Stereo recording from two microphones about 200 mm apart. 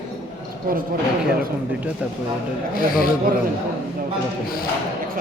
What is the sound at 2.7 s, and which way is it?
Speech, 45° left (ahead or behind).